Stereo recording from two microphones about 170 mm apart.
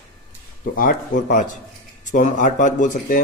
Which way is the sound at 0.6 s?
55° left (ahead or behind).